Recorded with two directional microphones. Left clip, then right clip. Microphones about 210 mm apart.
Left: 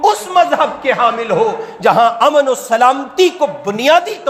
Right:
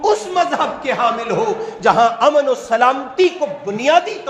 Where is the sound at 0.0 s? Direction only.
45° left (ahead or behind).